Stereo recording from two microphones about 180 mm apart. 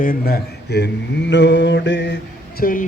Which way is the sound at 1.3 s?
80° left.